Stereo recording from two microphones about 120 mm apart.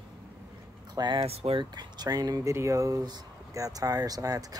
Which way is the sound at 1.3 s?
55° right (ahead or behind).